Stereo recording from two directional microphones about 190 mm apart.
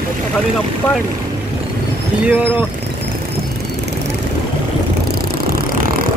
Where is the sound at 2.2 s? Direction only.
10° right (ahead or behind).